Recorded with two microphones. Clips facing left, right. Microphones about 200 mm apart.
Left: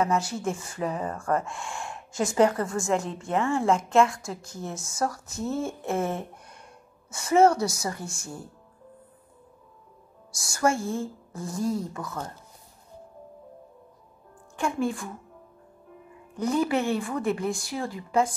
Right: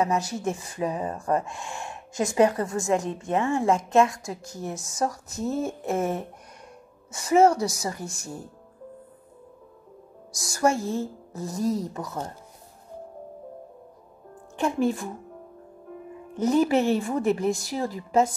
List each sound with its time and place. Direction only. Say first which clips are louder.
0.0 s a woman's voice: right 1 dB; 20° right (ahead or behind)
10.5 s speech: right 2 dB; 20° right (ahead or behind)
14.6 s speech: right 3 dB; 20° right (ahead or behind)
16.3 s speech: right 4 dB; 20° right (ahead or behind)